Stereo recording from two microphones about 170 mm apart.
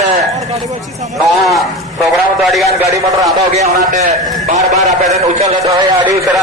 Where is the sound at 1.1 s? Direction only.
Centre (ahead or behind).